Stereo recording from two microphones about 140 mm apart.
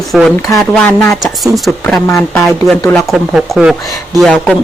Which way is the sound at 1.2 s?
Centre (ahead or behind).